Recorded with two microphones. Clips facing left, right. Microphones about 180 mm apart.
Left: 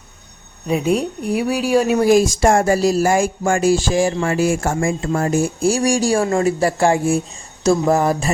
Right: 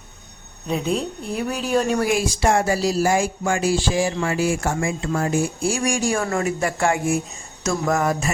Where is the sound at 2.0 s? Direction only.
45° left (ahead or behind).